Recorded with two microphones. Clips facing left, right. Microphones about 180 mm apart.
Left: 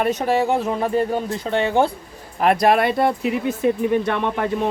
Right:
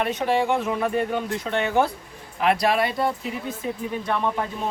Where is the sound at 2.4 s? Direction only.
50° left (ahead or behind).